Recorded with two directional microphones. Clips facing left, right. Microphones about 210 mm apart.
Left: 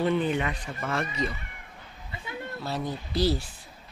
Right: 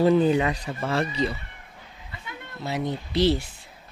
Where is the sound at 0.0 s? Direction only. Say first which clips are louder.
Right 6 dB; 35° right (ahead or behind).